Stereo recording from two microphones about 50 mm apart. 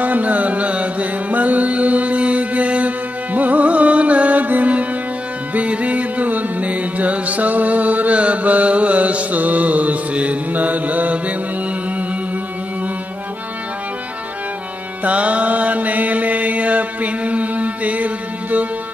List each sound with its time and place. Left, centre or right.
0.0 s music: right
15.0 s mantra: right